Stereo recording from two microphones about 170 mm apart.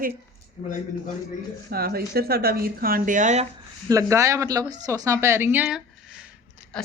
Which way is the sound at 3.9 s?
20° right (ahead or behind).